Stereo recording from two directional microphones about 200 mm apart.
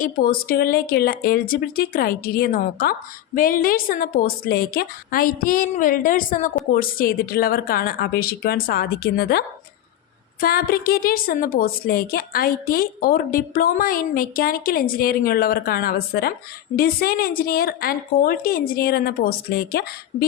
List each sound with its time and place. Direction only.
0.0 s a woman's voice: 45° left (ahead or behind)
10.4 s a woman's voice: 50° left (ahead or behind)